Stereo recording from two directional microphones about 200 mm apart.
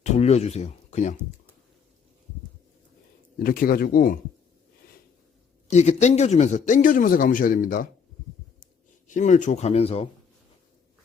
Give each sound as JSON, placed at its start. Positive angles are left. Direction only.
{"t": 0.0, "sound": "speech", "side_deg": 35}
{"t": 3.4, "sound": "speech", "side_deg": 45}
{"t": 5.7, "sound": "speech", "side_deg": 35}
{"t": 9.0, "sound": "speech", "side_deg": 40}